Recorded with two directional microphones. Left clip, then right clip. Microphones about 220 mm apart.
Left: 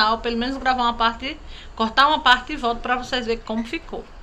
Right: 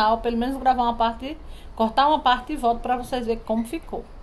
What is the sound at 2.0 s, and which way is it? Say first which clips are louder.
Speech: left 4 dB; 5° right (ahead or behind).